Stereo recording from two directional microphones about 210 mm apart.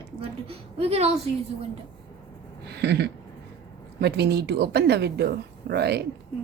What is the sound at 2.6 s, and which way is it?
A woman's voice, 55° right (ahead or behind).